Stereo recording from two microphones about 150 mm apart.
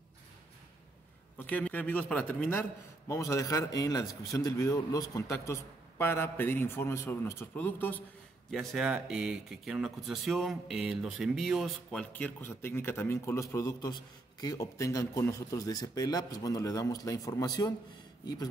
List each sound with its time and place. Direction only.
1.4 s a man's voice: 10° left (ahead or behind)
8.5 s speech: centre (ahead or behind); by 17.7 s 25° left (ahead or behind)